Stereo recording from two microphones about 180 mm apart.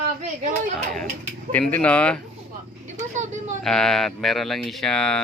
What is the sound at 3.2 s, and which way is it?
Speech, 40° right (ahead or behind).